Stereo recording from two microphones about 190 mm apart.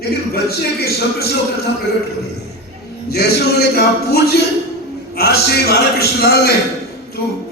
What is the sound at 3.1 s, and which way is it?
A man's voice, 55° left (ahead or behind).